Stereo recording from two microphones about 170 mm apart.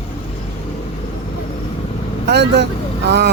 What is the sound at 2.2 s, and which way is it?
Speech, 80° right.